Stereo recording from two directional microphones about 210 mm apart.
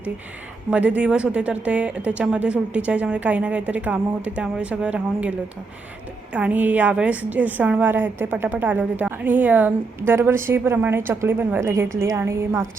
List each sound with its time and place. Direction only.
0.7 s speech: 5° right (ahead or behind)
6.3 s a woman's voice: 5° right (ahead or behind)